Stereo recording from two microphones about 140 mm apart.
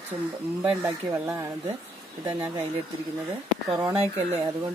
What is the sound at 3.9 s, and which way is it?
Speech, 45° right (ahead or behind).